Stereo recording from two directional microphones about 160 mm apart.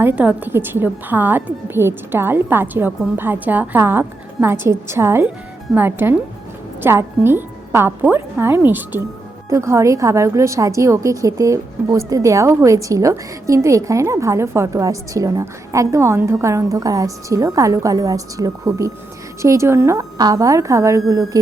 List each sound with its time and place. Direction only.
0.0 s a woman's voice: 10° right (ahead or behind)